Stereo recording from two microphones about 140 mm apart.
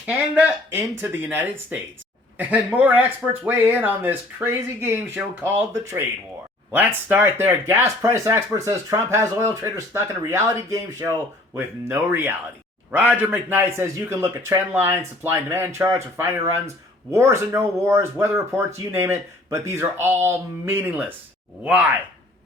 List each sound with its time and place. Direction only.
0.0 s a man's voice: 10° right (ahead or behind)